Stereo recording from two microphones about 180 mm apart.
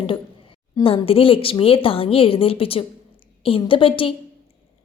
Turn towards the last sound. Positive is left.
turn(degrees=30)  # may be behind; listen again after turning